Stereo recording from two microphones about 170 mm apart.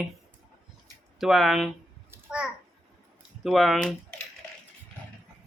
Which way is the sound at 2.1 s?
5° right (ahead or behind).